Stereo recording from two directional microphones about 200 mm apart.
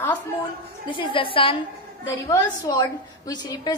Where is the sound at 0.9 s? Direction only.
25° left (ahead or behind).